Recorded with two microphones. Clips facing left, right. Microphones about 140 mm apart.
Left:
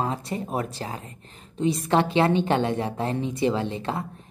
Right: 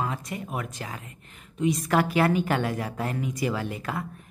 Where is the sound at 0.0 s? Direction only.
30° left (ahead or behind).